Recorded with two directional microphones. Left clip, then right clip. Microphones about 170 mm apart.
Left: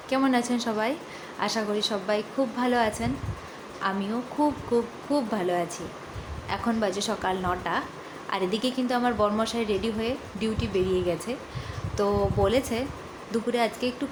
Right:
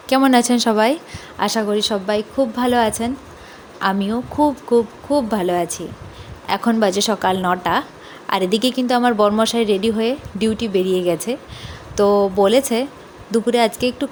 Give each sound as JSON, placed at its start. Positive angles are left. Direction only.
{"t": 0.1, "sound": "a woman's voice", "side_deg": -60}